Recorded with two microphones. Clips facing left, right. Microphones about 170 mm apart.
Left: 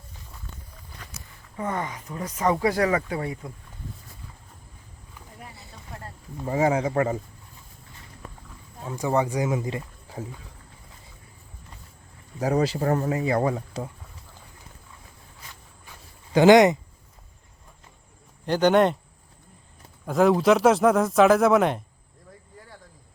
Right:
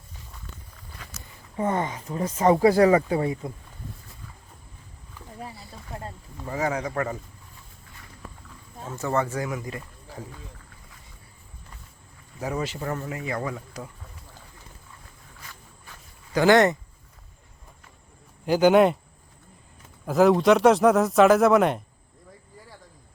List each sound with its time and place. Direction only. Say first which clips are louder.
1.5 s speech: right 4 dB; 25° right (ahead or behind)
5.9 s a sound: right 4 dB; 25° right (ahead or behind)
6.3 s speech: left 5 dB; 25° left (ahead or behind)
9.0 s speech: left 2 dB; 15° left (ahead or behind)
12.4 s speech: left 6 dB; 35° left (ahead or behind)
15.9 s a sound: left 4 dB; 20° left (ahead or behind)
18.4 s speech: right 2 dB; 5° right (ahead or behind)
20.1 s speech: right 1 dB; centre (ahead or behind)